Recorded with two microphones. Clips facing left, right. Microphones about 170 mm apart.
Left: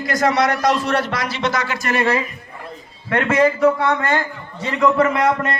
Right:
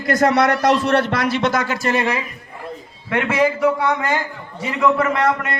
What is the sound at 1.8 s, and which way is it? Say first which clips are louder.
Speech: even; 25° right (ahead or behind).